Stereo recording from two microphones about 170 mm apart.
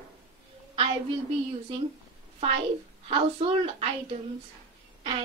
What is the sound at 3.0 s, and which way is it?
Speech, 35° right (ahead or behind).